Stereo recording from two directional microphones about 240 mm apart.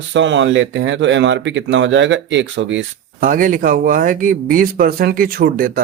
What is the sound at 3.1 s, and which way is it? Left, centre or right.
Speech, right.